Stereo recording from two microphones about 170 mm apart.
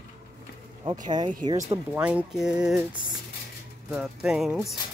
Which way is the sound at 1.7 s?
10° right (ahead or behind).